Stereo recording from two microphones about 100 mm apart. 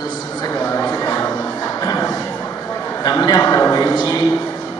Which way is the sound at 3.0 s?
40° left (ahead or behind).